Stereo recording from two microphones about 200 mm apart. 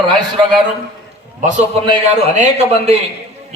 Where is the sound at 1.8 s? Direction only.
35° right (ahead or behind).